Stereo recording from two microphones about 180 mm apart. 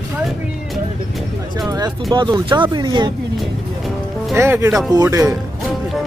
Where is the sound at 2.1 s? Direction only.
25° right (ahead or behind).